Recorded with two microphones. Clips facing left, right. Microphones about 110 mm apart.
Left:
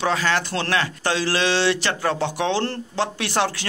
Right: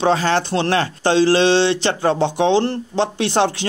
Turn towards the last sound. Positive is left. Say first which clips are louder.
# right 5 dB
turn(degrees=-25)  # may be behind; listen again after turning